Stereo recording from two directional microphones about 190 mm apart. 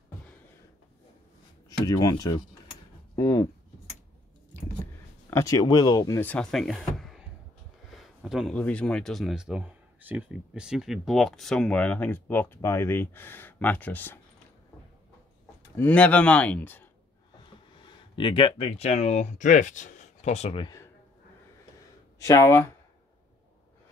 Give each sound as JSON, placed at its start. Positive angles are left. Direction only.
{"t": 1.7, "sound": "speech", "side_deg": 15}
{"t": 5.3, "sound": "speech", "side_deg": 15}
{"t": 15.7, "sound": "speech", "side_deg": 10}
{"t": 17.7, "sound": "speech", "side_deg": 25}
{"t": 22.2, "sound": "speech", "side_deg": 15}